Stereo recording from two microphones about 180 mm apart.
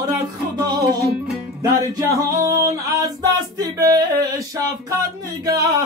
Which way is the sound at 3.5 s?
20° right (ahead or behind).